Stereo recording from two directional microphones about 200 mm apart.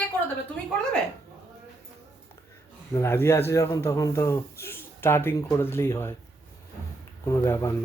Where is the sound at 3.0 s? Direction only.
10° left (ahead or behind).